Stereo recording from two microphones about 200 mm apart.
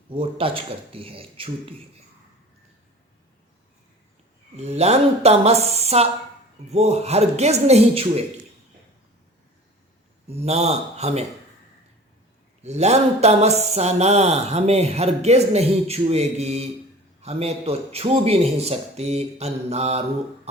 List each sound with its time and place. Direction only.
0.1 s speech: 25° right (ahead or behind)
4.5 s a man's voice: 35° right (ahead or behind)
10.2 s a man's voice: 30° right (ahead or behind)
12.6 s a man's voice: 35° right (ahead or behind)